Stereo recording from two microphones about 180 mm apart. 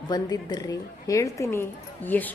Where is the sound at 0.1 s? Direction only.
20° left (ahead or behind).